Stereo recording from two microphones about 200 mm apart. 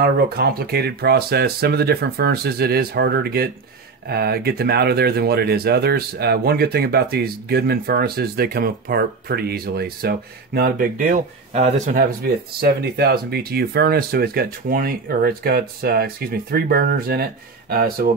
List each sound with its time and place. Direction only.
0.0 s speech: 50° right (ahead or behind)
11.9 s speech: 50° right (ahead or behind)